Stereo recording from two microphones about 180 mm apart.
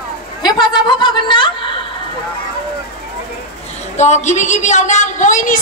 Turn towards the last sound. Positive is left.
turn(degrees=45)  # may be behind; listen again after turning